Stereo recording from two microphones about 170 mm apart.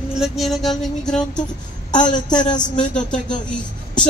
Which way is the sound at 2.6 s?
5° left (ahead or behind).